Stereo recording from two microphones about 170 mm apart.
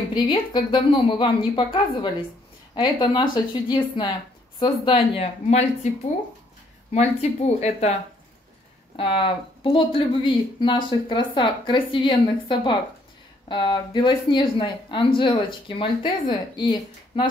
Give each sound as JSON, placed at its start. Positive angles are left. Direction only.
{"t": 0.1, "sound": "a woman's voice", "side_deg": 25}
{"t": 6.9, "sound": "a woman's voice", "side_deg": 40}
{"t": 8.9, "sound": "speech", "side_deg": 30}